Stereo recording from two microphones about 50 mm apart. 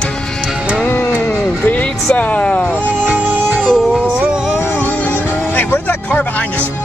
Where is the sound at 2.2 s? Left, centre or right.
Left.